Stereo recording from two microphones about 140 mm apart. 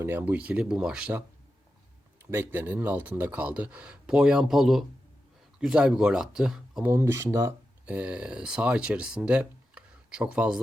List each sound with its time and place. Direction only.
0.0 s speech: 15° right (ahead or behind)
2.3 s speech: 15° right (ahead or behind)
6.9 s speech: 20° right (ahead or behind)
7.9 s speech: 10° right (ahead or behind)